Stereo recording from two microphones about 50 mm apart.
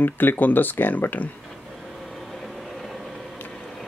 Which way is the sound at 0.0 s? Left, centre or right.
Left.